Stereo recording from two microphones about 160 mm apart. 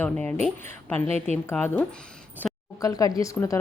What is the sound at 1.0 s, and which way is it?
Speech, 40° right (ahead or behind).